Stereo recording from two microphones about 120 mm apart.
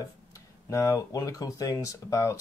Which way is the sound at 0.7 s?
25° left (ahead or behind).